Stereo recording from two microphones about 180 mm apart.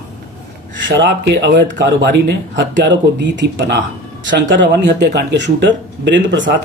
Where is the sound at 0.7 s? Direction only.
85° right.